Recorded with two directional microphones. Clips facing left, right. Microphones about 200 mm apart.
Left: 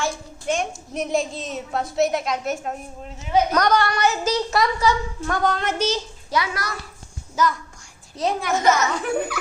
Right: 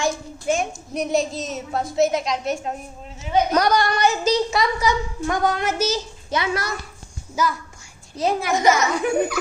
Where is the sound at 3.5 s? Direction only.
10° right (ahead or behind).